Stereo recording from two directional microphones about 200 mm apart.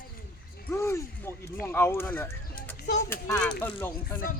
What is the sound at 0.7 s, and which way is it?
Speech, 15° left (ahead or behind).